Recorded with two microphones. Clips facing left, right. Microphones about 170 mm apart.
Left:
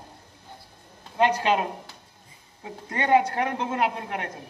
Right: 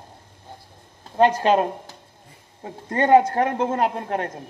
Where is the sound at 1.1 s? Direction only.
45° right (ahead or behind).